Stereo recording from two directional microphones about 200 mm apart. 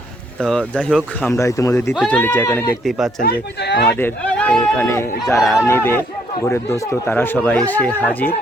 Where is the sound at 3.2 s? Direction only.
55° left (ahead or behind).